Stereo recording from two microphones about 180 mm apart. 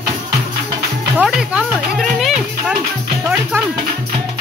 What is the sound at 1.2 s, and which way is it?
Music, 5° right (ahead or behind).